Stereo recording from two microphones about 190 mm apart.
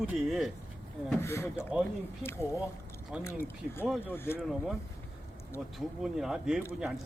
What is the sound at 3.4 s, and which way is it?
Speech, 15° left (ahead or behind).